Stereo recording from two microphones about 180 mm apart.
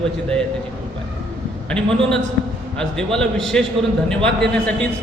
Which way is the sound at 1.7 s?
5° left (ahead or behind).